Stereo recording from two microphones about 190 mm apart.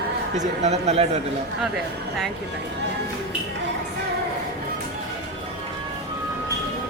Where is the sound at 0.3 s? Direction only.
35° right (ahead or behind).